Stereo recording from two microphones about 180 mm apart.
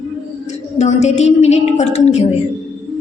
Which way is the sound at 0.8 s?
40° left (ahead or behind).